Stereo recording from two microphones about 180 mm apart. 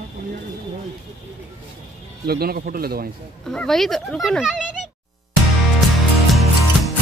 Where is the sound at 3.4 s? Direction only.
Centre (ahead or behind).